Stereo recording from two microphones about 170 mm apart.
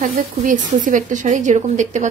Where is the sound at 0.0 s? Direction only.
50° right (ahead or behind).